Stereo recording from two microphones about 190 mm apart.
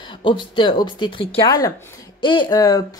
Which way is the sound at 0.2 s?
25° left (ahead or behind).